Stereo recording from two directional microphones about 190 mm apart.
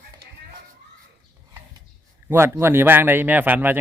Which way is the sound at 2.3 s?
10° right (ahead or behind).